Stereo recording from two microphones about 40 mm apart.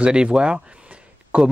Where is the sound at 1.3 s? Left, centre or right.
Right.